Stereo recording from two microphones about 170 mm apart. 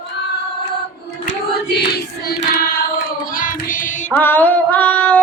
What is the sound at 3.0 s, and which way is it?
Child singing, 55° left (ahead or behind).